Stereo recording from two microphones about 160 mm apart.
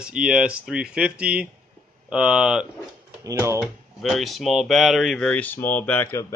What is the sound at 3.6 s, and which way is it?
Speech, centre (ahead or behind).